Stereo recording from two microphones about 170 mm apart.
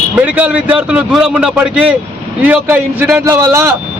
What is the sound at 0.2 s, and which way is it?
A man's voice, 10° right (ahead or behind).